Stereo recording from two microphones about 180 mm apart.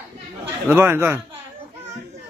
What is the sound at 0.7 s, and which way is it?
Speech, 15° right (ahead or behind).